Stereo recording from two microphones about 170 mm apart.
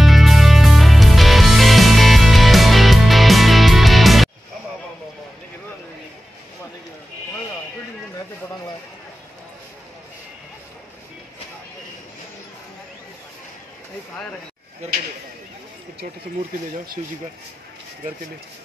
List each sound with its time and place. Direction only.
0.0 s music: centre (ahead or behind)
14.8 s a sound: 40° right (ahead or behind)
17.0 s speech: 45° right (ahead or behind)